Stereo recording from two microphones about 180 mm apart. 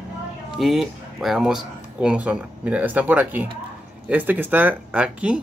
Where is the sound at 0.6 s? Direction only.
Centre (ahead or behind).